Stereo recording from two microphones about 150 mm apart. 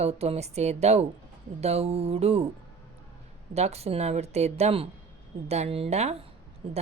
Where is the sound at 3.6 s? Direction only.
45° right (ahead or behind).